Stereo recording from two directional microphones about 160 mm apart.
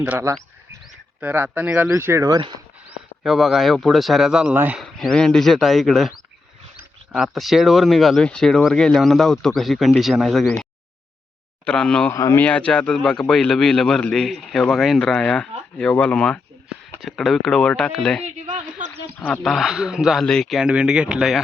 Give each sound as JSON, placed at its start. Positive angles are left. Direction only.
{"t": 0.0, "sound": "speech", "side_deg": -10}
{"t": 3.2, "sound": "a man's voice", "side_deg": 0}
{"t": 4.8, "sound": "a man's voice", "side_deg": 0}
{"t": 11.6, "sound": "a man's voice", "side_deg": 5}
{"t": 12.1, "sound": "speech", "side_deg": 20}
{"t": 12.5, "sound": "a man's voice", "side_deg": 10}
{"t": 19.2, "sound": "a man's voice", "side_deg": 0}